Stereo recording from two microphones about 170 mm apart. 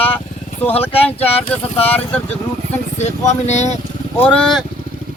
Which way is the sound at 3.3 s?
40° left (ahead or behind).